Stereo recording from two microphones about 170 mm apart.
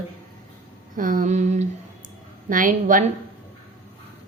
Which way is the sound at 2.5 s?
50° right (ahead or behind).